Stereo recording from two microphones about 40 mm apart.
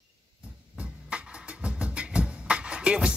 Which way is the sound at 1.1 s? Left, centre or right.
Right.